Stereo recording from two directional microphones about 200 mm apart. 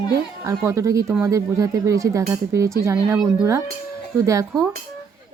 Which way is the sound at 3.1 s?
5° right (ahead or behind).